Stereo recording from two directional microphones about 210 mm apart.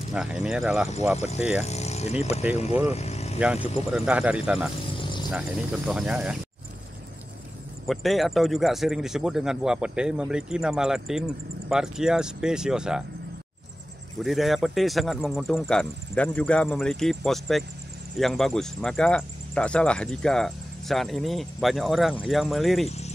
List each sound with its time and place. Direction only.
0.1 s speech: 5° right (ahead or behind)
1.1 s speech: 30° left (ahead or behind)
2.9 s vehicle: 30° left (ahead or behind)
3.3 s speech: 5° right (ahead or behind)
7.8 s speech: centre (ahead or behind)
14.2 s speech: centre (ahead or behind)
22.8 s cricket: 30° left (ahead or behind)